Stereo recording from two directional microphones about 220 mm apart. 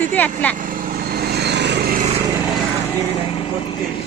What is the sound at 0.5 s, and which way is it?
Vehicle, 40° right (ahead or behind).